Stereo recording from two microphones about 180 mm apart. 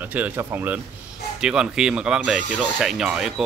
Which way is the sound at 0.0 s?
10° right (ahead or behind).